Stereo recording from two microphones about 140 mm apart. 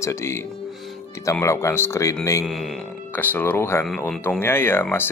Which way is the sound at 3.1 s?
15° left (ahead or behind).